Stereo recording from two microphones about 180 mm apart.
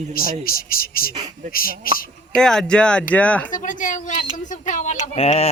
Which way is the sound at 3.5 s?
45° left (ahead or behind).